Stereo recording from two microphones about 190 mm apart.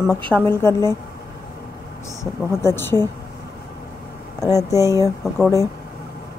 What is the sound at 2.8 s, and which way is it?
Speech, 10° left (ahead or behind).